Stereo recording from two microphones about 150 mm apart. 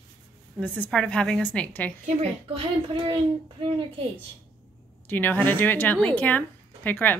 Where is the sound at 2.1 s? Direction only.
45° right (ahead or behind).